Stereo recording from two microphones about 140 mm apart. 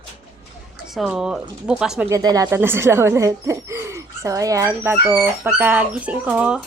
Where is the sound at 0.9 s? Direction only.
5° right (ahead or behind).